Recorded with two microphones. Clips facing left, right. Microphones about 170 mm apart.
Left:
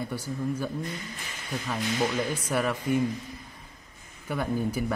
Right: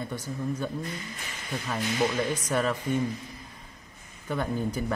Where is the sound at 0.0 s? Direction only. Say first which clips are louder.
Left 1 dB; 10° left (ahead or behind).